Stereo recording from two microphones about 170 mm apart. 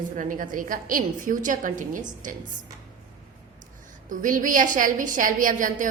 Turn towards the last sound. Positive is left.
turn(degrees=-50)  # may be behind; listen again after turning